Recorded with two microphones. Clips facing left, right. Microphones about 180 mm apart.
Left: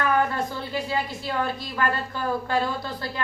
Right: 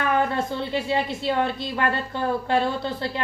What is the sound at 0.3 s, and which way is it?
A woman's voice, 25° right (ahead or behind).